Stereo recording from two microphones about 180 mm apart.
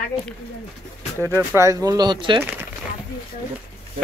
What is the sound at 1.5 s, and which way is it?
Speech, 15° right (ahead or behind).